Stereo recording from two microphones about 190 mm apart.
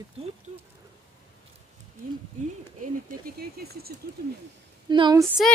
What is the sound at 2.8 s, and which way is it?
Speech, 50° right (ahead or behind).